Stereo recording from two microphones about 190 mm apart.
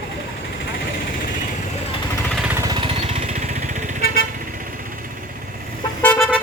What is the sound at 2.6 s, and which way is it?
Vehicle, 25° right (ahead or behind).